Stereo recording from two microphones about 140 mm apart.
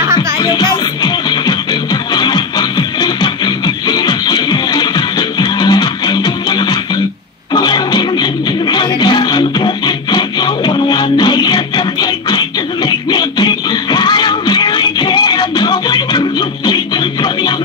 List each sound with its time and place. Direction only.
0.4 s music: 30° left (ahead or behind)